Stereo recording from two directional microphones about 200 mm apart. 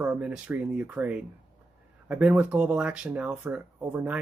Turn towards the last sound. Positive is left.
turn(degrees=-5)  # may be behind; listen again after turning